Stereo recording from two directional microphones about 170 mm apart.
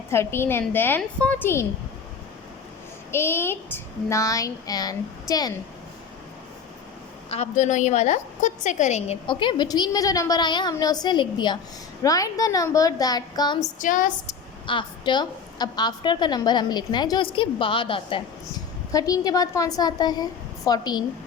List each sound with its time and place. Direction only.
0.1 s a woman's voice: 15° left (ahead or behind)
3.1 s a woman's voice: 15° left (ahead or behind)
7.3 s a woman's voice: 40° left (ahead or behind); by 13.6 s 25° left (ahead or behind)
13.6 s a woman's voice: 50° left (ahead or behind)
14.7 s a woman's voice: 30° left (ahead or behind)
18.9 s a woman's voice: 20° left (ahead or behind)